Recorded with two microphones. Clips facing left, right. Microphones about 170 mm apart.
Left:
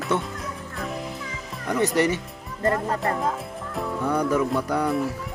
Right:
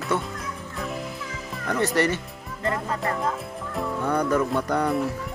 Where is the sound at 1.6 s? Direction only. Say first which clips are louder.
Left 1 dB; 15° left (ahead or behind).